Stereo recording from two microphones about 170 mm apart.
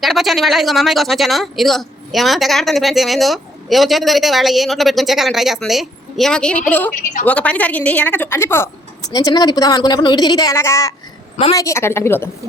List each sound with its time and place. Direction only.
0.0 s speech: centre (ahead or behind)
6.9 s a woman's voice: 50° left (ahead or behind)
7.3 s a woman's voice: 10° left (ahead or behind)